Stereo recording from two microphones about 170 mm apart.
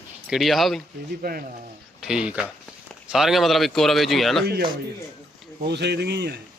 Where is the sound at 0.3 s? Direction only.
Centre (ahead or behind).